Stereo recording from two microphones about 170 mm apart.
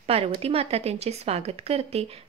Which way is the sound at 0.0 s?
35° right (ahead or behind).